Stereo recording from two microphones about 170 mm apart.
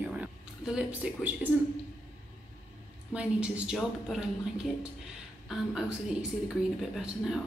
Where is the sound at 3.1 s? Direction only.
5° right (ahead or behind).